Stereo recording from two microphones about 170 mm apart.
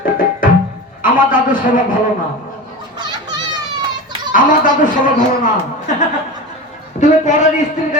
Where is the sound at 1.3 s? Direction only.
55° left (ahead or behind).